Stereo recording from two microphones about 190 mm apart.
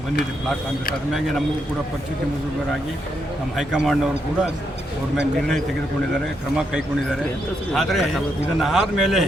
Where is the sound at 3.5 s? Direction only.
Centre (ahead or behind).